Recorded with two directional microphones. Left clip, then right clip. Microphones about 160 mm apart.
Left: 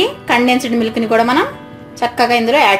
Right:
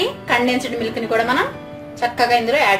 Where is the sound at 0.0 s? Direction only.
35° left (ahead or behind).